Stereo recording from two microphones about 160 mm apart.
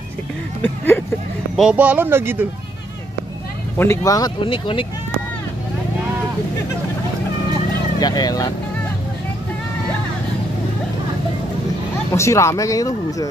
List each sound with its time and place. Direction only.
0.6 s speech: 10° left (ahead or behind)
1.6 s speech: 10° right (ahead or behind)
3.7 s speech: 15° left (ahead or behind)
4.4 s speech: 35° left (ahead or behind)
8.0 s speech: 25° left (ahead or behind)
12.1 s speech: 20° left (ahead or behind)